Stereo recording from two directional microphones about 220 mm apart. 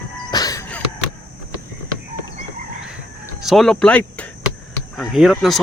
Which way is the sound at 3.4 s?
Centre (ahead or behind).